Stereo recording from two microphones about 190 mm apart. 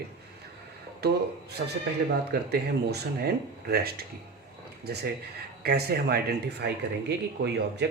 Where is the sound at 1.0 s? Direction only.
60° right (ahead or behind).